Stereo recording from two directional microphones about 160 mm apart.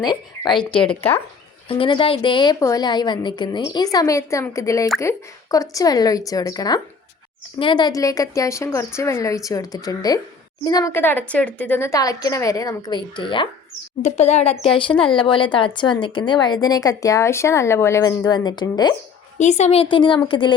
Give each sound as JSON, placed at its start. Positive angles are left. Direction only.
{"t": 0.0, "sound": "a woman's voice", "side_deg": 30}
{"t": 0.8, "sound": "speech", "side_deg": 10}
{"t": 1.6, "sound": "a woman's voice", "side_deg": 35}
{"t": 10.9, "sound": "a woman's voice", "side_deg": 10}
{"t": 14.0, "sound": "a woman's voice", "side_deg": 45}
{"t": 19.4, "sound": "speech", "side_deg": 45}